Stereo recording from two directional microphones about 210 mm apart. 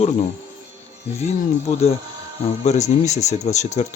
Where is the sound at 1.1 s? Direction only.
30° left (ahead or behind).